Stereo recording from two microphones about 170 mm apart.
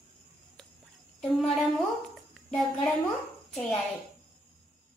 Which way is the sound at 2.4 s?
5° left (ahead or behind).